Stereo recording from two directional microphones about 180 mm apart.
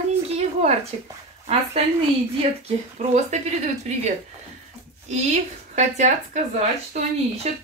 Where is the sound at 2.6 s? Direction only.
40° right (ahead or behind).